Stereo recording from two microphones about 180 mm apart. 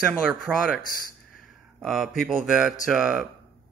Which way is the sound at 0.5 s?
5° right (ahead or behind).